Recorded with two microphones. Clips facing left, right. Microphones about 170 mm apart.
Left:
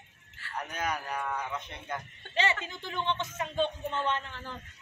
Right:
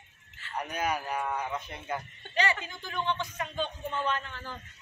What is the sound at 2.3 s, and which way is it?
Speech, 25° left (ahead or behind).